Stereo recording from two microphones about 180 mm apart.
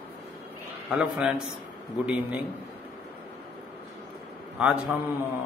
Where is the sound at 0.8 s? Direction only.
5° right (ahead or behind).